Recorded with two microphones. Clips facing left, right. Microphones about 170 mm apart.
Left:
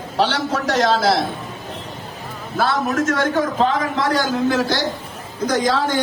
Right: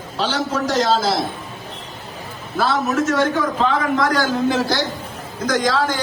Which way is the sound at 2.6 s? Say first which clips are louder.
Even; 55° left (ahead or behind).